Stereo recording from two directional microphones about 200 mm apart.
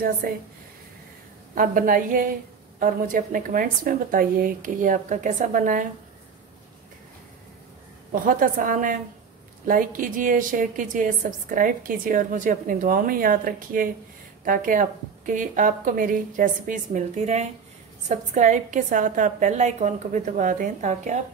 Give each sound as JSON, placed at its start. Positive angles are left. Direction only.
{"t": 0.2, "sound": "a woman's voice", "side_deg": -45}
{"t": 1.5, "sound": "a woman's voice", "side_deg": -45}
{"t": 8.1, "sound": "a woman's voice", "side_deg": -45}